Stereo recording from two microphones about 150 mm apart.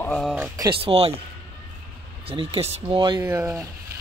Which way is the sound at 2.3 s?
35° right (ahead or behind).